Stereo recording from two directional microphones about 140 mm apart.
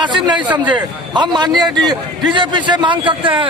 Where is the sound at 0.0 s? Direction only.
35° right (ahead or behind).